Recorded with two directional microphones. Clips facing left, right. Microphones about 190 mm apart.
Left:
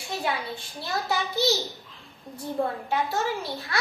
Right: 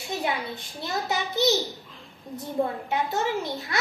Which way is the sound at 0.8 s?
20° right (ahead or behind).